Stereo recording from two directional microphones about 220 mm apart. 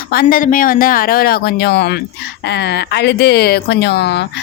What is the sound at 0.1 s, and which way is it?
Speech, 40° left (ahead or behind).